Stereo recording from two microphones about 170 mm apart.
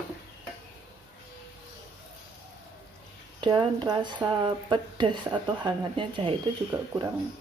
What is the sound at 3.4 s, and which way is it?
Speech, 30° right (ahead or behind).